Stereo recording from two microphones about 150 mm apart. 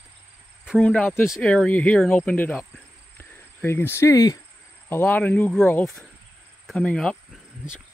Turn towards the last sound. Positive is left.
turn(degrees=5)  # may be behind; listen again after turning